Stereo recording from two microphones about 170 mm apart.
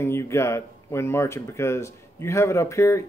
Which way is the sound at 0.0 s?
15° left (ahead or behind).